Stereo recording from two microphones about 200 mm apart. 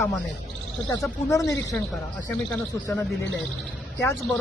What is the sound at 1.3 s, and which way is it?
Speech, 15° left (ahead or behind).